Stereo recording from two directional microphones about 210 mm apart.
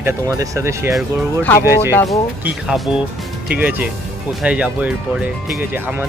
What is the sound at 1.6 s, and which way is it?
Speech, 10° right (ahead or behind).